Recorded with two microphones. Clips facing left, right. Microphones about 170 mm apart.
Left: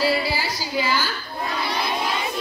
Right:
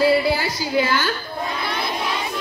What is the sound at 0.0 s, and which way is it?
Speech, 55° right (ahead or behind).